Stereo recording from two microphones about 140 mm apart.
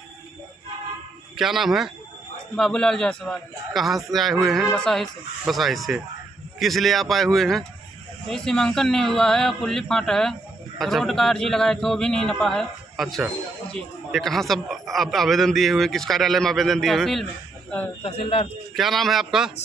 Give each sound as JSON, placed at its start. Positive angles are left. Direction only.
{"t": 1.3, "sound": "a man's voice", "side_deg": 0}
{"t": 18.0, "sound": "speech", "side_deg": 45}
{"t": 18.8, "sound": "a man's voice", "side_deg": 0}